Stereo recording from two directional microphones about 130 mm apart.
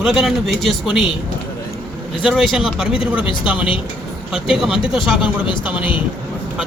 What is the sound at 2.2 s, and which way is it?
Speech, 5° right (ahead or behind).